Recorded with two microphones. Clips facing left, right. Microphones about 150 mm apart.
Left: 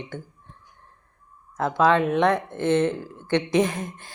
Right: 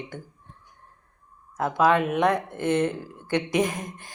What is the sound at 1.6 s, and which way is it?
Speech, 10° right (ahead or behind).